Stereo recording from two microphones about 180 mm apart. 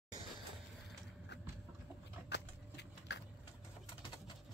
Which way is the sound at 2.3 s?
70° left (ahead or behind).